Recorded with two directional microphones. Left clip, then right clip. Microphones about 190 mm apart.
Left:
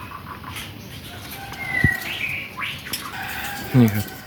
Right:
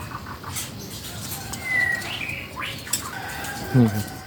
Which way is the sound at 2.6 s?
45° left (ahead or behind).